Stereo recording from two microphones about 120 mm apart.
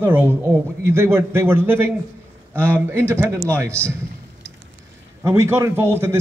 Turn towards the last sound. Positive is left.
turn(degrees=-20)  # may be behind; listen again after turning